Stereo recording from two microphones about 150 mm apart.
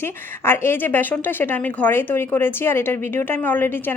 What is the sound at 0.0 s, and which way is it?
Speech, 15° left (ahead or behind).